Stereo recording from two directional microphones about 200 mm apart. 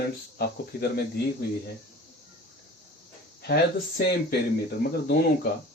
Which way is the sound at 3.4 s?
55° left (ahead or behind).